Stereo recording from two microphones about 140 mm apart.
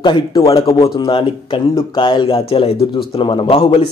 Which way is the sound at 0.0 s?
30° left (ahead or behind).